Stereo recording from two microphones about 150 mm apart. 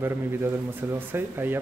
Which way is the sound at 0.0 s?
15° right (ahead or behind).